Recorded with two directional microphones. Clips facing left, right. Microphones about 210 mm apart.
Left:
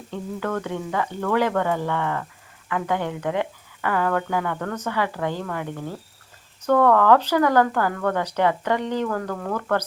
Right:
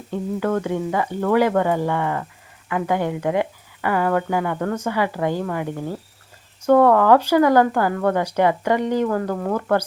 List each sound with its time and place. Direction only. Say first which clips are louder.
0.1 s a woman's voice: right 5 dB; 15° right (ahead or behind)
4.5 s speech: right 5 dB; 25° right (ahead or behind)
4.8 s speech: right 3 dB; 15° right (ahead or behind)